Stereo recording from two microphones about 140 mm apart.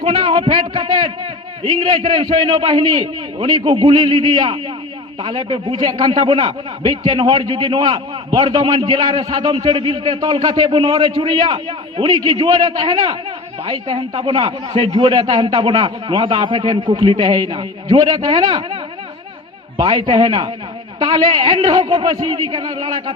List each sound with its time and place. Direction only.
0.0 s a man's voice: 35° right (ahead or behind)